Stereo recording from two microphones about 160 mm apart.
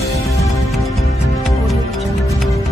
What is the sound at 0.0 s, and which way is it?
Music, 20° left (ahead or behind).